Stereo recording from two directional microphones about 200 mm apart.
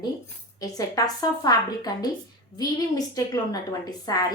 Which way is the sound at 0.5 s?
20° left (ahead or behind).